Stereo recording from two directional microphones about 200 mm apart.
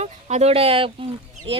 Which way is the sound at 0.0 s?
35° right (ahead or behind).